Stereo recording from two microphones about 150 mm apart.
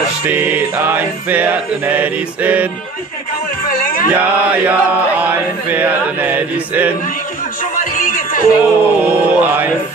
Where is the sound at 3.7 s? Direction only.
65° left (ahead or behind).